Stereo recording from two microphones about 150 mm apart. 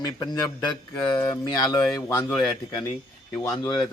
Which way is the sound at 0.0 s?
25° left (ahead or behind).